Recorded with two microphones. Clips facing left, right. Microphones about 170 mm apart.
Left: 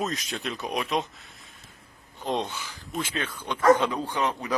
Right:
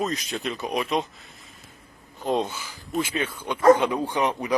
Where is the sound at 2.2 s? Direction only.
5° right (ahead or behind).